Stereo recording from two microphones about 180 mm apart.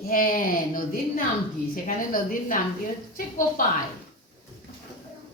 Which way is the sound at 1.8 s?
50° left (ahead or behind).